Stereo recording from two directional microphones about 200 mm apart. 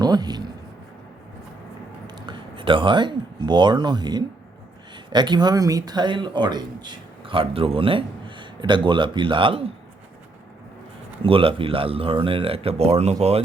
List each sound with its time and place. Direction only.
0.0 s a sound: 20° right (ahead or behind)
2.0 s speech: 20° right (ahead or behind)
11.2 s speech: 25° right (ahead or behind)